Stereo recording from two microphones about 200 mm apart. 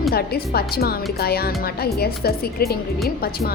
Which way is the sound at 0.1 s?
50° left (ahead or behind).